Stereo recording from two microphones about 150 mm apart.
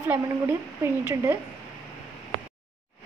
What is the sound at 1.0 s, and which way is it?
Speech, 15° right (ahead or behind).